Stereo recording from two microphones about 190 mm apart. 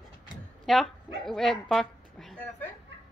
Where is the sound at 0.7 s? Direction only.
Centre (ahead or behind).